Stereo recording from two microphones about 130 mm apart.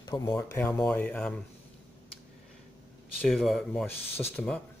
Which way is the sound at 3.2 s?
Centre (ahead or behind).